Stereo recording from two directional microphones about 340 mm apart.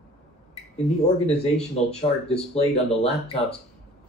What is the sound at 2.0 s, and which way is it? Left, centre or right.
Speech, centre.